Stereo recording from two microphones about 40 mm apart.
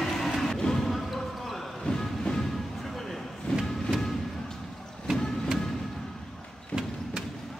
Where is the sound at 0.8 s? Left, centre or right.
Centre.